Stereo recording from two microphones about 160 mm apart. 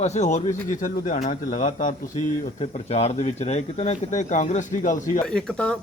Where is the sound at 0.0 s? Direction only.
45° left (ahead or behind).